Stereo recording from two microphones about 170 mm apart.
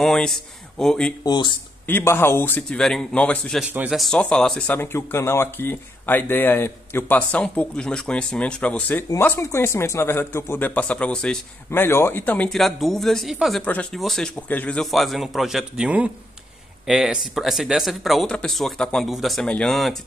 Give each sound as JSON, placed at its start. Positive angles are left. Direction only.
{"t": 0.0, "sound": "speech", "side_deg": 0}
{"t": 1.2, "sound": "speech", "side_deg": 25}
{"t": 1.9, "sound": "speech", "side_deg": 15}